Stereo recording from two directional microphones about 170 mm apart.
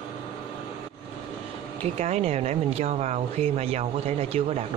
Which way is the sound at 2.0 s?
40° right (ahead or behind).